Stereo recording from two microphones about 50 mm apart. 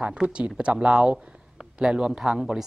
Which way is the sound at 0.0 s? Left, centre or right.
Right.